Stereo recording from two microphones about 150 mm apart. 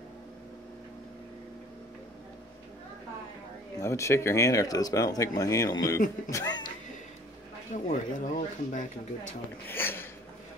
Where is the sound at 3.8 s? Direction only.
20° left (ahead or behind).